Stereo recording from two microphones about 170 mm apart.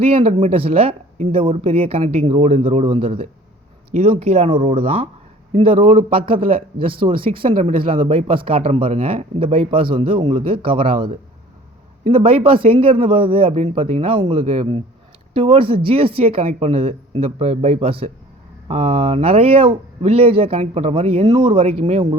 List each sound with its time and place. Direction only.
0.0 s speech: 35° right (ahead or behind)
6.0 s speech: 30° right (ahead or behind)